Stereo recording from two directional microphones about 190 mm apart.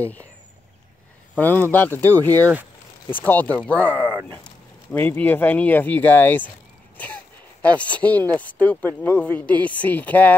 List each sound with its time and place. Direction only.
0.0 s a woman's voice: 10° left (ahead or behind)
1.3 s a woman's voice: 10° left (ahead or behind)
2.3 s speech: 15° right (ahead or behind)
3.1 s a woman's voice: 10° left (ahead or behind)
4.9 s a woman's voice: 10° left (ahead or behind)
7.6 s a woman's voice: 5° left (ahead or behind)